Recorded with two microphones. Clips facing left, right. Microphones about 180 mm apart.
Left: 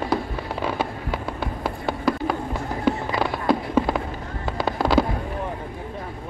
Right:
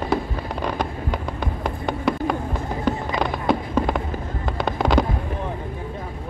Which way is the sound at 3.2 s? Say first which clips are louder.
Even; 5° left (ahead or behind).